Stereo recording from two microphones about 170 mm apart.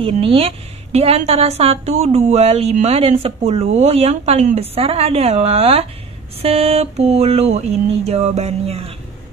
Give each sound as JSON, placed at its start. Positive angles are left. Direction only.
{"t": 0.0, "sound": "a woman's voice", "side_deg": -35}